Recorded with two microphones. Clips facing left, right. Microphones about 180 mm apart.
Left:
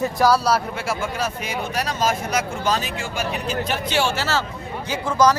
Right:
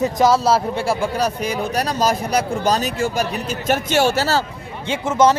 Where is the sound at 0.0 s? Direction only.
20° right (ahead or behind); by 4.4 s 40° right (ahead or behind).